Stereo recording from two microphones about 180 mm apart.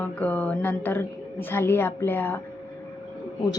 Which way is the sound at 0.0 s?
10° left (ahead or behind).